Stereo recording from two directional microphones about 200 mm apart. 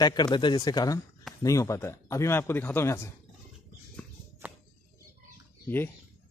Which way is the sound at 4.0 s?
5° left (ahead or behind).